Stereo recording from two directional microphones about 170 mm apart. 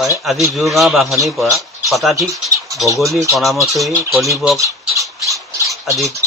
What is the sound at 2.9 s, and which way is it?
A man's voice, centre (ahead or behind).